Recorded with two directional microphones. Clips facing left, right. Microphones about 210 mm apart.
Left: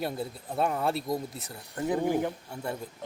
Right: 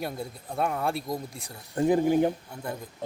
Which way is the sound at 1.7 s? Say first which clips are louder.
Right 5 dB; 25° right (ahead or behind).